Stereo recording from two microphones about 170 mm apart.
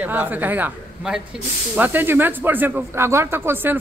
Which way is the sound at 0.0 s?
10° right (ahead or behind).